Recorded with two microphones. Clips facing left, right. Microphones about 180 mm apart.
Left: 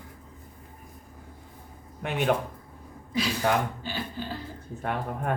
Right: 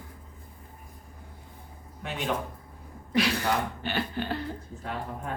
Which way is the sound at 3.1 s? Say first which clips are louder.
Right 3 dB; 70° right (ahead or behind).